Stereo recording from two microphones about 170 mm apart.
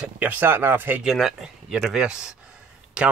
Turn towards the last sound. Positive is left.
turn(degrees=-5)  # may be behind; listen again after turning